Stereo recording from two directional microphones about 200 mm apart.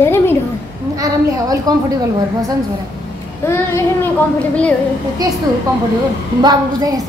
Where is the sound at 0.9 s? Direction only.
15° right (ahead or behind).